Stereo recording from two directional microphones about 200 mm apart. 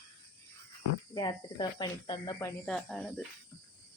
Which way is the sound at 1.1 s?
20° left (ahead or behind).